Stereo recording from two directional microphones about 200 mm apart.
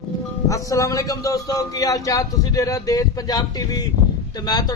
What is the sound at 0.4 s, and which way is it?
A man's voice, 15° left (ahead or behind).